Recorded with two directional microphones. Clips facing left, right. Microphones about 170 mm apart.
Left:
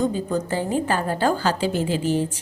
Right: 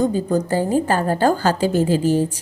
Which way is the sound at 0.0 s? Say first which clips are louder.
Right 4 dB; 40° right (ahead or behind).